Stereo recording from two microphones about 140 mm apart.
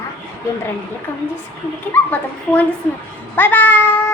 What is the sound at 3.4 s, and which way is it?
Speech, 15° left (ahead or behind).